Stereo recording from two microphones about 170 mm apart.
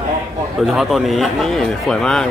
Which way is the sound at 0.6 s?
Centre (ahead or behind).